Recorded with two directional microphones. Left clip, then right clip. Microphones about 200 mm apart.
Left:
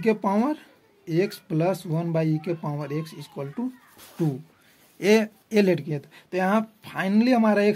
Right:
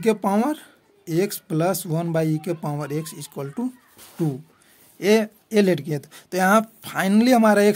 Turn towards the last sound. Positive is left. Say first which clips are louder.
# right 4 dB
turn(degrees=-30)  # may be behind; listen again after turning